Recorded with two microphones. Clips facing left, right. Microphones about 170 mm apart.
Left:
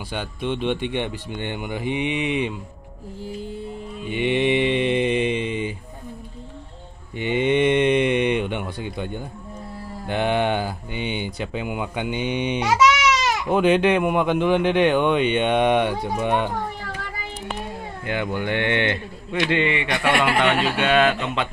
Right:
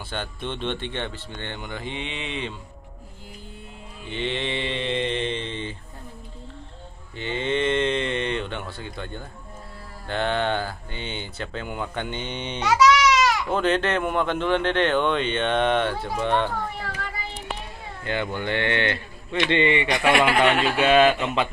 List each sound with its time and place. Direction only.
0.1 s a man's voice: 10° left (ahead or behind)
4.1 s a man's voice: 15° left (ahead or behind)
7.2 s a man's voice: 15° left (ahead or behind)
12.6 s goat: 25° left (ahead or behind)
13.6 s a man's voice: 10° left (ahead or behind)
18.0 s a man's voice: 10° left (ahead or behind)
19.5 s a man's voice: centre (ahead or behind)